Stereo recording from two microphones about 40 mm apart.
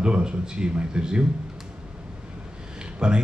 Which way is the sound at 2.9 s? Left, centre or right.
Right.